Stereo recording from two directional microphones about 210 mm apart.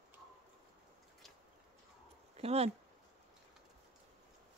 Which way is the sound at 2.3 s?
30° right (ahead or behind).